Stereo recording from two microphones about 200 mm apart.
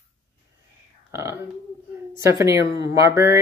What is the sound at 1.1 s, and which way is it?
Burping, 15° right (ahead or behind).